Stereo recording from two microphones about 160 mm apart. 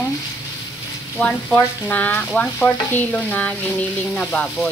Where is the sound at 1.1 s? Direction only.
10° left (ahead or behind).